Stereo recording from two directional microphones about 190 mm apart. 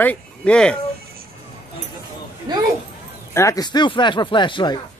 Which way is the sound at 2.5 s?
20° right (ahead or behind).